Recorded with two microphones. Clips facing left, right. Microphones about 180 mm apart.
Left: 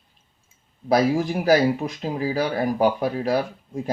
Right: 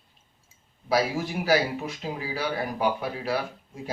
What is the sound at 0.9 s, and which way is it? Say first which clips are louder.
Speech: left 6 dB; 40° left (ahead or behind).